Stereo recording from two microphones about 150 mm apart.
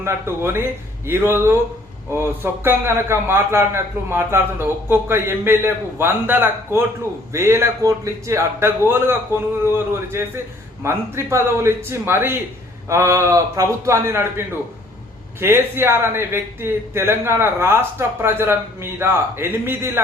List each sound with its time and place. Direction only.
0.0 s a man's voice: 15° right (ahead or behind)